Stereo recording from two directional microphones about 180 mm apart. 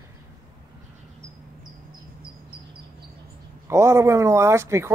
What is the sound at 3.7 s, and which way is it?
Speech, 15° right (ahead or behind).